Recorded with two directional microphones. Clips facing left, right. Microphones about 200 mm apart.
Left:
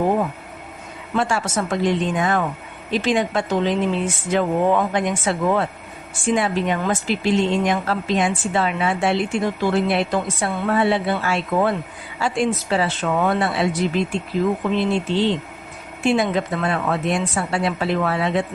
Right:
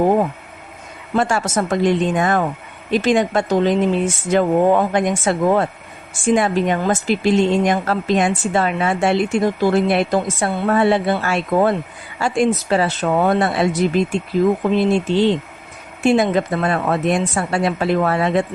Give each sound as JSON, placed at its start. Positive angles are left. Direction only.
{"t": 1.1, "sound": "speech", "side_deg": -45}
{"t": 16.0, "sound": "speech", "side_deg": -45}